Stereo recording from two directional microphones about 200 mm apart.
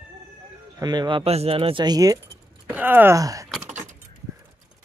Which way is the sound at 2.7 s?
10° right (ahead or behind).